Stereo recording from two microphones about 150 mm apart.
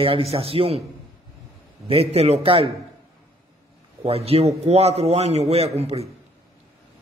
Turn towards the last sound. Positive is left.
turn(degrees=-45)  # may be behind; listen again after turning